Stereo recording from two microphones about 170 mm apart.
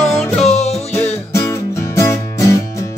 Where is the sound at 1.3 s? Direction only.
20° left (ahead or behind).